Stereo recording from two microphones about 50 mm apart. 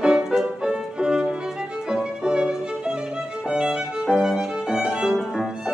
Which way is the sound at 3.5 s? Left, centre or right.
Centre.